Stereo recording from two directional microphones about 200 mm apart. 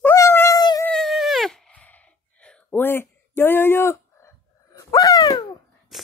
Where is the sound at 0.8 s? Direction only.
Centre (ahead or behind); by 5.6 s 20° left (ahead or behind).